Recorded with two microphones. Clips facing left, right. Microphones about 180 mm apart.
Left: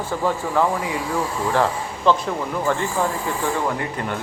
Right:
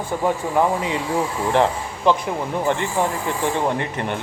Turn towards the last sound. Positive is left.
turn(degrees=-25)  # may be behind; listen again after turning